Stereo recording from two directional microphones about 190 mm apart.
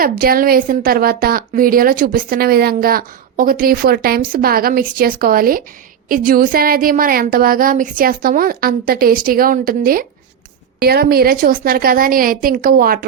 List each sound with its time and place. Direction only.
0.0 s a woman's voice: 50° right (ahead or behind)